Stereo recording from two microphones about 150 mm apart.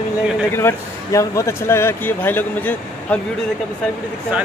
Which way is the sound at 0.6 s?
20° left (ahead or behind).